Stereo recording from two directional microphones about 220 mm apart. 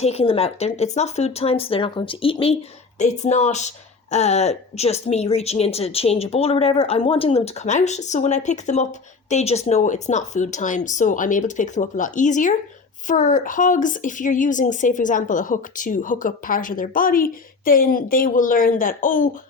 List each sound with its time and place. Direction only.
0.0 s speech: 25° left (ahead or behind)